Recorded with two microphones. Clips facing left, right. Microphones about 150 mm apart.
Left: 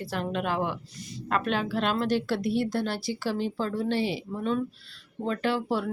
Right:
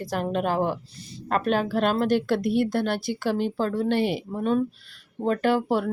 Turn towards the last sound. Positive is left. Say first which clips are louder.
# right 5 dB
turn(degrees=-50)  # may be behind; listen again after turning